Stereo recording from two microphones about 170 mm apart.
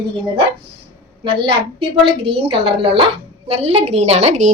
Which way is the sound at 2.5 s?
30° right (ahead or behind).